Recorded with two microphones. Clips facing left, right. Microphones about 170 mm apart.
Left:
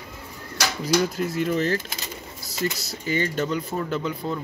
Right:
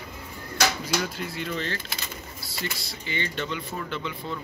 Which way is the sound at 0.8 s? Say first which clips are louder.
Left 7 dB; 45° left (ahead or behind).